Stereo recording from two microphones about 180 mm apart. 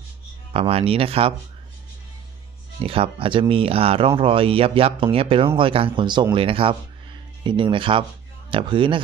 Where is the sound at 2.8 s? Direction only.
30° right (ahead or behind).